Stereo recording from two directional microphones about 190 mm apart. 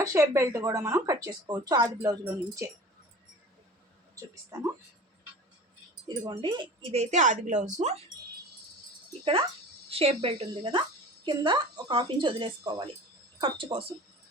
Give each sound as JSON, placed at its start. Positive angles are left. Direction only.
{"t": 0.0, "sound": "a woman's voice", "side_deg": -15}
{"t": 4.5, "sound": "a woman's voice", "side_deg": -15}
{"t": 6.1, "sound": "speech", "side_deg": -20}
{"t": 9.9, "sound": "speech", "side_deg": -30}